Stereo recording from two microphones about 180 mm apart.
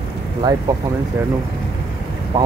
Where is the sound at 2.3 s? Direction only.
20° right (ahead or behind).